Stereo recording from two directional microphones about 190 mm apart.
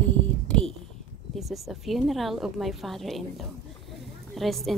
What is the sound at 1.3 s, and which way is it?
A woman's voice, centre (ahead or behind).